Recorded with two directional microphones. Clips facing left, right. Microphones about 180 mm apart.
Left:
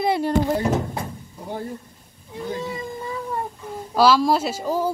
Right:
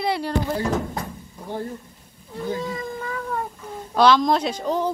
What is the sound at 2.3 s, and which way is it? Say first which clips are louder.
Cat: right 1 dB; 15° left (ahead or behind).